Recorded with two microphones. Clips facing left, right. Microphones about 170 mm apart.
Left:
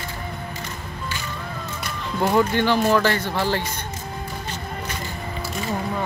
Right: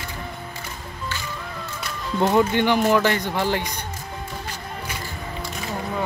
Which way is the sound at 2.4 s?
15° right (ahead or behind).